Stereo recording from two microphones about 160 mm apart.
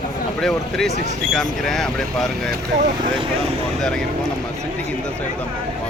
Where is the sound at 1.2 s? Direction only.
Centre (ahead or behind).